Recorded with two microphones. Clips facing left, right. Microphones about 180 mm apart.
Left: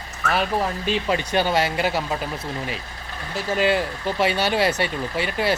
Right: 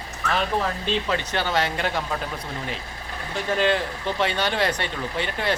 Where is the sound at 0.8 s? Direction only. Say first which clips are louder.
Left 2 dB; 10° left (ahead or behind).